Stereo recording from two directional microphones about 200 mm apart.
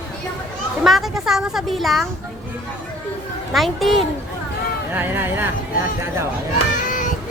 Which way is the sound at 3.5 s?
Centre (ahead or behind).